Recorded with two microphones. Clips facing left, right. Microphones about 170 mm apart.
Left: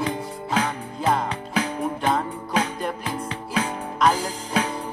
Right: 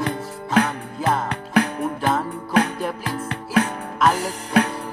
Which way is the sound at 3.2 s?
60° right (ahead or behind).